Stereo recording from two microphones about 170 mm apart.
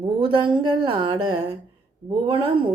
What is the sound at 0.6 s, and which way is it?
Speech, 30° right (ahead or behind).